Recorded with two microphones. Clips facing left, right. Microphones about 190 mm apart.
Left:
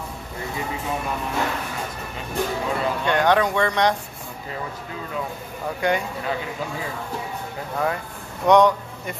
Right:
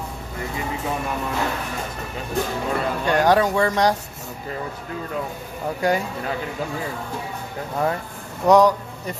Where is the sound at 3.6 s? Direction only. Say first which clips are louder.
Right 1 dB; 35° right (ahead or behind).